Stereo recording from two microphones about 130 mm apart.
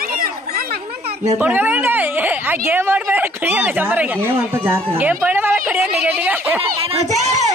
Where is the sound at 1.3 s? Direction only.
15° right (ahead or behind).